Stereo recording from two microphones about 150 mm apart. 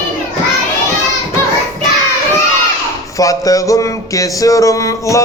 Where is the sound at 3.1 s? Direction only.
20° left (ahead or behind).